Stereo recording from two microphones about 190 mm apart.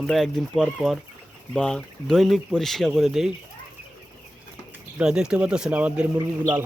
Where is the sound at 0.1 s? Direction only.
Centre (ahead or behind).